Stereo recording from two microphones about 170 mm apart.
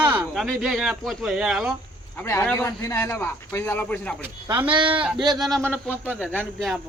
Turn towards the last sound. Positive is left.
turn(degrees=5)  # may be behind; listen again after turning